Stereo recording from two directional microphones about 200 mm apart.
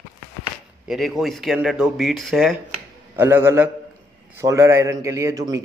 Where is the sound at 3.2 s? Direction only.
10° right (ahead or behind).